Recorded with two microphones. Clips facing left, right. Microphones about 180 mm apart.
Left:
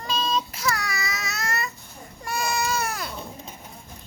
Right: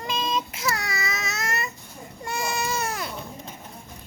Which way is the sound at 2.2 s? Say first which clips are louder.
Left 1 dB; 25° right (ahead or behind).